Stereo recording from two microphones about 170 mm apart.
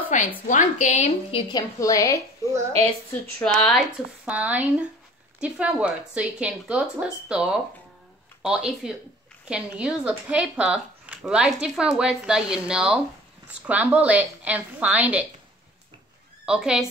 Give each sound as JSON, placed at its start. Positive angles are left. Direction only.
{"t": 0.1, "sound": "a woman's voice", "side_deg": 45}
{"t": 1.5, "sound": "a woman's voice", "side_deg": 20}
{"t": 3.3, "sound": "speech", "side_deg": 5}
{"t": 4.3, "sound": "speech", "side_deg": -10}
{"t": 16.4, "sound": "speech", "side_deg": -5}